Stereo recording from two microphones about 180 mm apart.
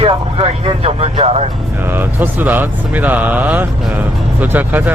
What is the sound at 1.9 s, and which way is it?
Speech, 10° right (ahead or behind).